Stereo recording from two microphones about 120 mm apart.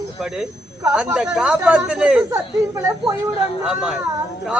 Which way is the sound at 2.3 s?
30° right (ahead or behind).